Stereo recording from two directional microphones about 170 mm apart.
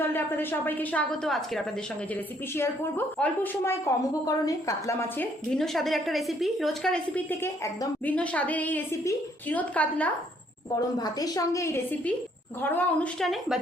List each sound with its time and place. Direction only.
0.1 s a woman's voice: 10° left (ahead or behind)
10.8 s a woman's voice: 20° left (ahead or behind); by 13.6 s centre (ahead or behind)